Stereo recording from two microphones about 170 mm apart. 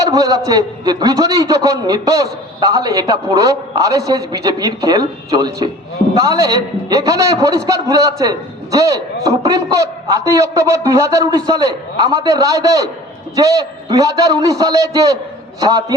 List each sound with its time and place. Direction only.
0.0 s a man's voice: 20° right (ahead or behind)